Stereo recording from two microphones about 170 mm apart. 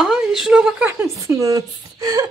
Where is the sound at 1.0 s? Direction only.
15° right (ahead or behind).